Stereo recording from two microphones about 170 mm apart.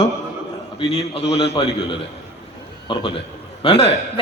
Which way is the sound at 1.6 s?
30° left (ahead or behind).